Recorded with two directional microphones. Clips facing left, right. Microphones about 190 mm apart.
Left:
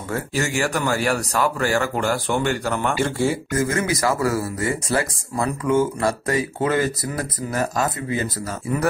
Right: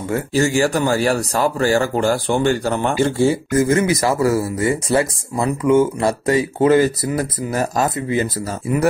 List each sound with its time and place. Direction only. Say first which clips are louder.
0.1 s speech: right 6 dB; 30° right (ahead or behind)